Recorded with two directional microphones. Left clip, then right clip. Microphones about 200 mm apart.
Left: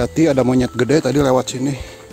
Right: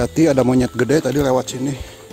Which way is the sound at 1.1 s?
20° left (ahead or behind).